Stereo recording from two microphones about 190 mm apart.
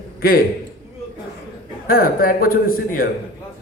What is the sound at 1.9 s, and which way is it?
A man's voice, 50° left (ahead or behind).